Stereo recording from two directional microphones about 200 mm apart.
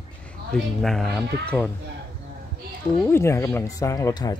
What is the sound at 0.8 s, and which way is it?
Speech, centre (ahead or behind).